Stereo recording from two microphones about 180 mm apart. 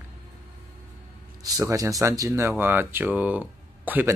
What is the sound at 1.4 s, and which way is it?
Speech, 20° right (ahead or behind).